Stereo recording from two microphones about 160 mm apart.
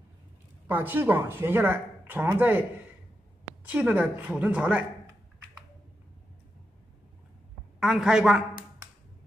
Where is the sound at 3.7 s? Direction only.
10° right (ahead or behind).